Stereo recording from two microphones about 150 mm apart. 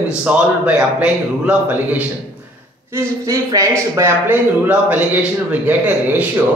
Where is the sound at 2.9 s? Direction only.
20° right (ahead or behind).